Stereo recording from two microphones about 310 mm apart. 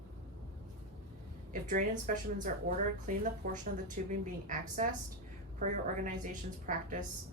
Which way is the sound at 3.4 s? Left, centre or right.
Right.